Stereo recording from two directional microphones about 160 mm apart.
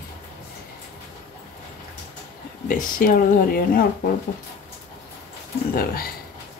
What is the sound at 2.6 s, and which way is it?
Speech, 55° left (ahead or behind).